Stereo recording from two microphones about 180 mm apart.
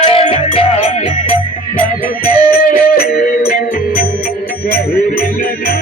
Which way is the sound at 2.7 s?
55° left (ahead or behind).